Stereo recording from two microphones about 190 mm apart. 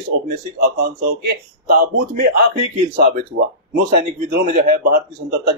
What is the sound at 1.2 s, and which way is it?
Speech, 55° right (ahead or behind).